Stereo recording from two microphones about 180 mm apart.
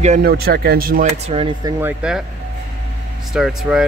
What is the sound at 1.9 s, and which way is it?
Speech, 5° right (ahead or behind).